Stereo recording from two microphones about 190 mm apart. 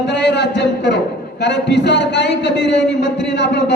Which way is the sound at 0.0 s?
65° left (ahead or behind).